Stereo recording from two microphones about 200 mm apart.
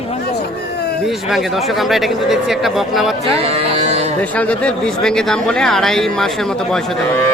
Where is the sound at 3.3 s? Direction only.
30° right (ahead or behind).